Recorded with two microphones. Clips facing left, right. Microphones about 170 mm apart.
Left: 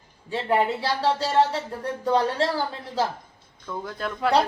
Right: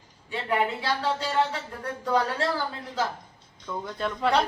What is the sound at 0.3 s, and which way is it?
Speech, 35° left (ahead or behind).